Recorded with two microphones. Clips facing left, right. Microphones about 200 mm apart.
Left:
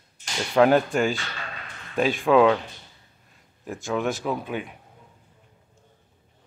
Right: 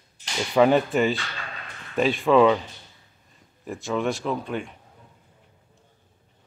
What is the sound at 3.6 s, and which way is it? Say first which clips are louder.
Speech: even; centre (ahead or behind).